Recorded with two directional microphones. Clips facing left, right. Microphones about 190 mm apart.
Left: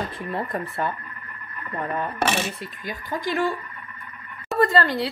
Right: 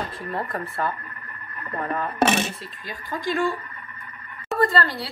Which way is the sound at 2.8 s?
20° left (ahead or behind).